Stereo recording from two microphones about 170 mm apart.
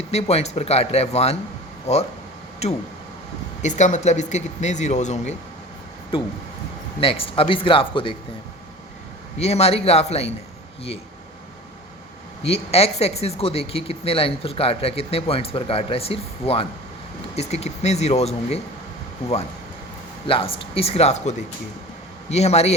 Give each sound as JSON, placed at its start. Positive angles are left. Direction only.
{"t": 0.1, "sound": "speech", "side_deg": 40}
{"t": 3.6, "sound": "speech", "side_deg": 45}
{"t": 7.0, "sound": "speech", "side_deg": 35}
{"t": 9.4, "sound": "speech", "side_deg": 40}
{"t": 12.4, "sound": "speech", "side_deg": 35}
{"t": 20.2, "sound": "speech", "side_deg": 35}